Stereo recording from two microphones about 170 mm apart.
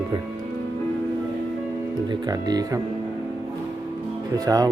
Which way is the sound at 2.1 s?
25° right (ahead or behind).